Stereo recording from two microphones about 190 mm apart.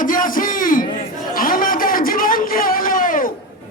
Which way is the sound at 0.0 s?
45° left (ahead or behind).